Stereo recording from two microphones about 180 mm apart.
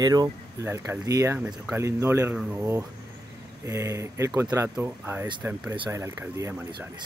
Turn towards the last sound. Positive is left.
turn(degrees=-15)  # may be behind; listen again after turning